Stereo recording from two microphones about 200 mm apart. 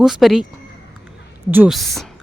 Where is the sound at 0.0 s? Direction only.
Centre (ahead or behind).